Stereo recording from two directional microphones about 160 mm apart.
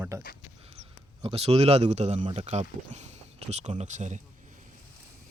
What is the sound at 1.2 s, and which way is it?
Speech, 40° right (ahead or behind).